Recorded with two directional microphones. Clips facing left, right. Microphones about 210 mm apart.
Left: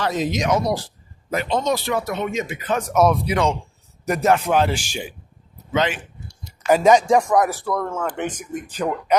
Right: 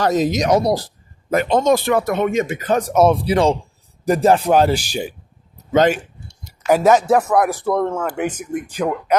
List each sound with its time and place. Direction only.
0.0 s speech: 40° right (ahead or behind)
1.3 s speech: 50° right (ahead or behind)
6.7 s speech: 10° right (ahead or behind)
7.6 s speech: 25° right (ahead or behind)
7.9 s speech: 10° right (ahead or behind)